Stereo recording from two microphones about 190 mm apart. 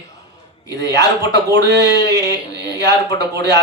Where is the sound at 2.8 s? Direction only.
65° right (ahead or behind).